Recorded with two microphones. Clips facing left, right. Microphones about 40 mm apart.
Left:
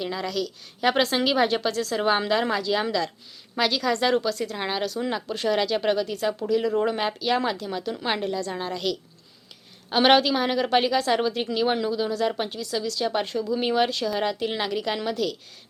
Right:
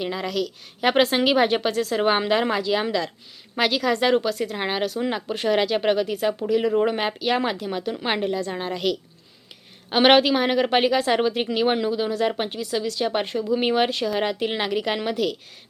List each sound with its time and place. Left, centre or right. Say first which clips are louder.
0.0 s speech: right 2 dB; centre
0.9 s a woman's voice: right 3 dB; right